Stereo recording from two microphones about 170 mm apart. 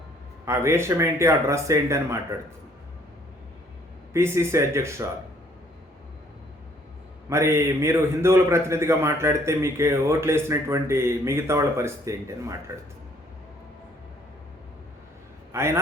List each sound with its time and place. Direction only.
0.4 s a man's voice: 15° right (ahead or behind)
4.1 s a man's voice: 15° right (ahead or behind)
7.3 s a man's voice: 15° right (ahead or behind)
15.5 s a man's voice: 15° right (ahead or behind)